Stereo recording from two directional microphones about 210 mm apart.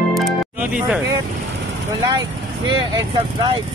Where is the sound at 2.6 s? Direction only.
20° right (ahead or behind).